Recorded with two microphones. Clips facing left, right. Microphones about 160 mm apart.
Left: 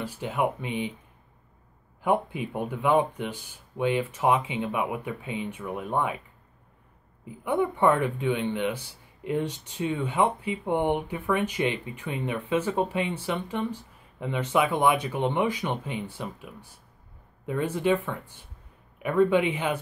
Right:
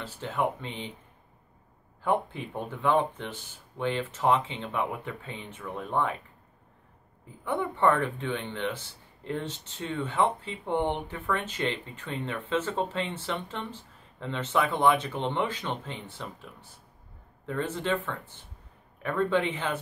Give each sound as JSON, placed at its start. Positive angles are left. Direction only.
{"t": 0.0, "sound": "speech", "side_deg": 15}
{"t": 2.0, "sound": "speech", "side_deg": 15}
{"t": 7.2, "sound": "speech", "side_deg": 15}
{"t": 17.5, "sound": "speech", "side_deg": 10}